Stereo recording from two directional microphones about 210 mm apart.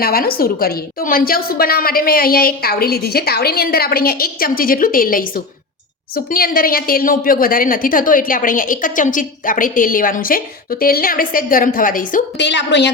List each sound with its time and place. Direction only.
0.0 s a woman's voice: 45° left (ahead or behind)
12.5 s a woman's voice: 55° left (ahead or behind)